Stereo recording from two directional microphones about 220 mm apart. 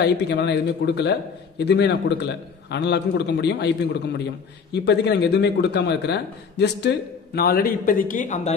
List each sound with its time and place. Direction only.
0.0 s a man's voice: 50° left (ahead or behind); by 8.5 s 35° left (ahead or behind)